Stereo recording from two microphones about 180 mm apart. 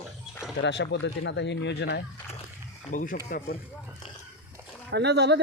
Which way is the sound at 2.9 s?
45° left (ahead or behind).